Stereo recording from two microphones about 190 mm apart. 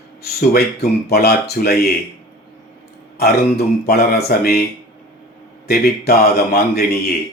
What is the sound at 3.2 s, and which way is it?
Speech, 55° left (ahead or behind).